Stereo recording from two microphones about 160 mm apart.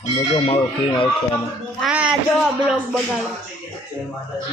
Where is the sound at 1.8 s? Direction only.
5° right (ahead or behind).